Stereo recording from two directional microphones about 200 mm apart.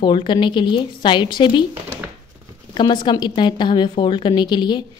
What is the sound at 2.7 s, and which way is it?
A woman's voice, 25° left (ahead or behind).